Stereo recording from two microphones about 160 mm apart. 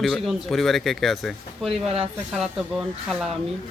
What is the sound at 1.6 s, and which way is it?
Speech, 35° right (ahead or behind).